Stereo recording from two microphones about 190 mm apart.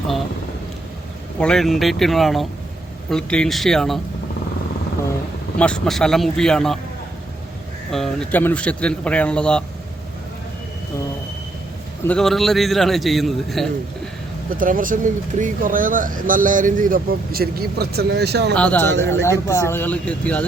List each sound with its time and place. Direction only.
1.4 s speech: 5° left (ahead or behind)
5.5 s speech: 5° left (ahead or behind)
7.9 s speech: centre (ahead or behind)
12.0 s speech: 5° left (ahead or behind)
14.5 s speech: 45° right (ahead or behind)
18.5 s speech: 5° left (ahead or behind)